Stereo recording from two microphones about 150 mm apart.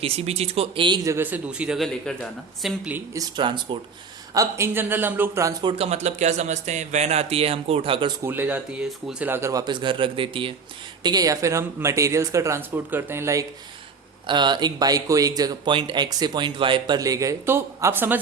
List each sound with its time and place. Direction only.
0.0 s speech: 40° right (ahead or behind); by 2.9 s centre (ahead or behind)
3.2 s speech: 30° right (ahead or behind)
4.4 s a man's voice: 20° right (ahead or behind)
5.7 s speech: 45° right (ahead or behind)
8.2 s a man's voice: 15° right (ahead or behind)
14.3 s speech: 30° right (ahead or behind); by 18.2 s 15° right (ahead or behind)